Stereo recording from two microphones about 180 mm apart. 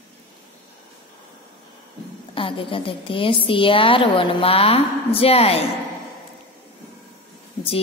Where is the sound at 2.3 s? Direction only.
30° left (ahead or behind).